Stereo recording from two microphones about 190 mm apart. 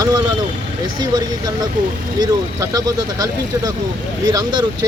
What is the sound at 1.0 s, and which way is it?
Speech, 20° right (ahead or behind).